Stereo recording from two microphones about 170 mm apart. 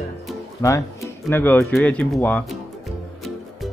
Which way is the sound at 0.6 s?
20° left (ahead or behind).